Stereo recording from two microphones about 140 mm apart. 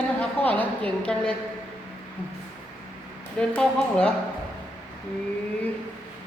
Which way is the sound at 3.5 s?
5° left (ahead or behind).